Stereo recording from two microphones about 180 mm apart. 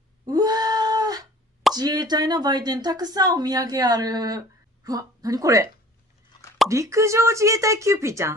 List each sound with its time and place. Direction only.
0.3 s a sound: 20° right (ahead or behind)
1.8 s a woman's voice: 20° right (ahead or behind)
6.7 s speech: 15° right (ahead or behind)